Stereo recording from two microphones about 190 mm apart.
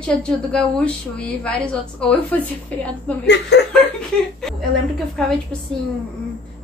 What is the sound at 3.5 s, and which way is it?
Chuckle, 60° left (ahead or behind).